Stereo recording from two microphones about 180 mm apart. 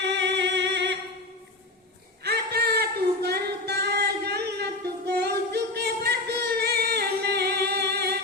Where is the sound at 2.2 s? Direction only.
65° right (ahead or behind).